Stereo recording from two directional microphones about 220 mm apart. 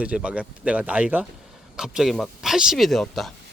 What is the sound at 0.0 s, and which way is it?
Speech, 5° right (ahead or behind).